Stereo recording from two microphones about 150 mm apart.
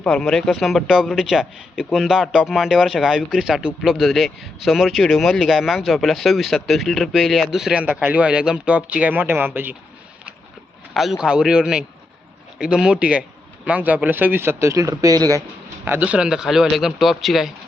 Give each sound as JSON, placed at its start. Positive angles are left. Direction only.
{"t": 0.0, "sound": "speech", "side_deg": 5}
{"t": 10.9, "sound": "speech", "side_deg": 0}
{"t": 15.8, "sound": "speech", "side_deg": -10}